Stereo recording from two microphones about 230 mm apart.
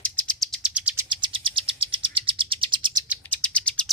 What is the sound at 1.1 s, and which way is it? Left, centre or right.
Bird, right.